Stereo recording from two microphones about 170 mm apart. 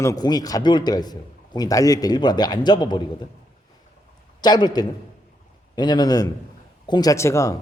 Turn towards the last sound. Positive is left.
turn(degrees=20)  # may be behind; listen again after turning